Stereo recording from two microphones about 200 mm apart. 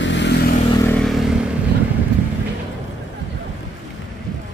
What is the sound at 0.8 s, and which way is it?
Vehicle, 5° left (ahead or behind).